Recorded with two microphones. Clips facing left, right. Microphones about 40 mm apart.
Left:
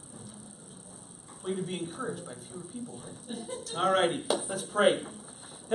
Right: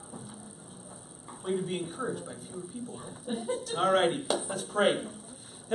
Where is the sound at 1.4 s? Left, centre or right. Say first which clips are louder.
Right 2 dB; centre.